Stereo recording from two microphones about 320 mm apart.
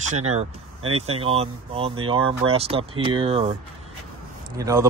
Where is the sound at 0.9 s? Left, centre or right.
Centre.